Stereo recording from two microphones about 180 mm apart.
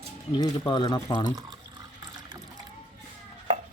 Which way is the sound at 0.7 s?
25° left (ahead or behind).